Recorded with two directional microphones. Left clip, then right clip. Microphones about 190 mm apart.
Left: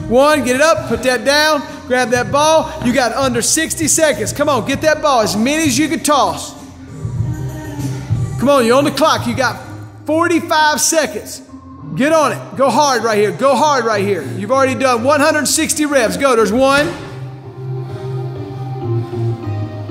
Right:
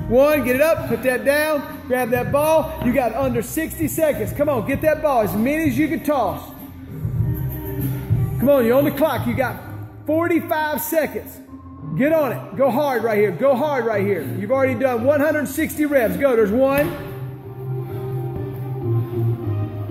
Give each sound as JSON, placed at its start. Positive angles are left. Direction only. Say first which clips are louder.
{"t": 0.1, "sound": "a man's voice", "louder": "left 4 dB", "side_deg": 15}
{"t": 8.4, "sound": "a man's voice", "louder": "left 4 dB", "side_deg": 10}